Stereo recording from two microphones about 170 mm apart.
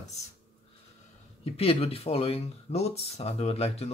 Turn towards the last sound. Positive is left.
turn(degrees=35)  # may be behind; listen again after turning